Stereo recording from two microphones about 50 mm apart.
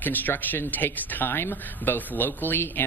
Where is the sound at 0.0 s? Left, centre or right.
Left.